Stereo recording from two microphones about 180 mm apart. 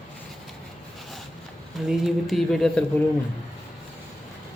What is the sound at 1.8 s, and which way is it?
Speech, centre (ahead or behind).